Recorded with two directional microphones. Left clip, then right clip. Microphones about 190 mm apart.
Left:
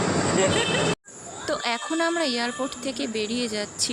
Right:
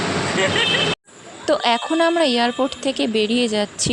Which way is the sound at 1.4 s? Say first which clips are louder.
Right 9 dB; 30° right (ahead or behind).